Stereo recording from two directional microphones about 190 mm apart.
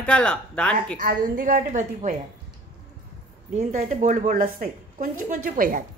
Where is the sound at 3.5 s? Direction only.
40° right (ahead or behind).